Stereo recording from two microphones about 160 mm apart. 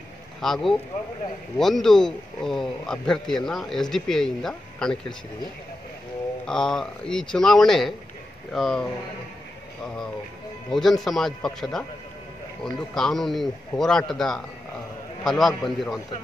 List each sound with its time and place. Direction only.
0.4 s a man's voice: centre (ahead or behind)
6.4 s a man's voice: 5° left (ahead or behind)
9.8 s a man's voice: 5° left (ahead or behind)